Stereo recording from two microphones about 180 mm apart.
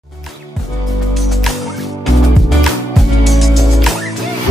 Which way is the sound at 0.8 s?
Centre (ahead or behind).